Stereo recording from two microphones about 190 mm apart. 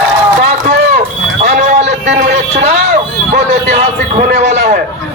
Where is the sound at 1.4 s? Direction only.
35° right (ahead or behind).